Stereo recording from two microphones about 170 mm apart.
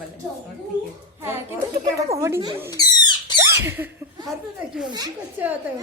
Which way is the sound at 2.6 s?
25° left (ahead or behind).